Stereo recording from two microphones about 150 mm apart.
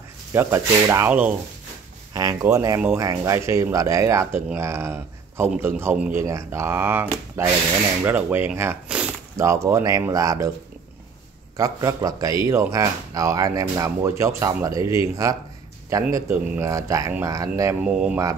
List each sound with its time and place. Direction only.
0.3 s speech: 15° right (ahead or behind)
9.4 s speech: 20° right (ahead or behind)
11.5 s speech: 25° right (ahead or behind)
17.8 s speech: 5° right (ahead or behind)